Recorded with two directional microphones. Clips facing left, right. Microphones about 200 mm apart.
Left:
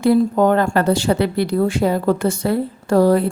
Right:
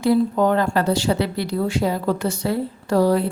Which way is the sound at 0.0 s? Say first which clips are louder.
Left 3 dB; 50° left (ahead or behind).